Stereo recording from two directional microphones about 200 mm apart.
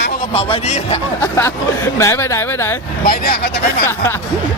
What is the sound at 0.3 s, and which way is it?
Speech, 30° left (ahead or behind).